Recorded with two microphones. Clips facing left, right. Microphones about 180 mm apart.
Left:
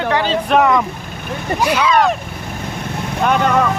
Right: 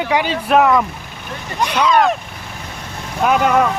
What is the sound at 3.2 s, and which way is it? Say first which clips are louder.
Speech: right 1 dB; 5° right (ahead or behind).